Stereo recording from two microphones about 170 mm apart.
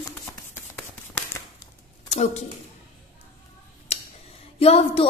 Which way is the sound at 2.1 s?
40° left (ahead or behind).